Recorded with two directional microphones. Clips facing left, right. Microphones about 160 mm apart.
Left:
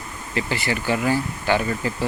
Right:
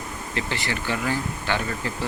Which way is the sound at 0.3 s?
10° left (ahead or behind).